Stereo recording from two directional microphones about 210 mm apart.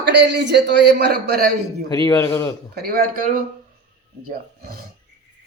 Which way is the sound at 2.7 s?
45° right (ahead or behind).